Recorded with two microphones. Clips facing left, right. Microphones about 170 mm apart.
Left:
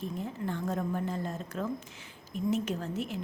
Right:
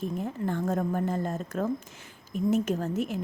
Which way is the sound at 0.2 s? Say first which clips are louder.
Right 5 dB; 45° right (ahead or behind).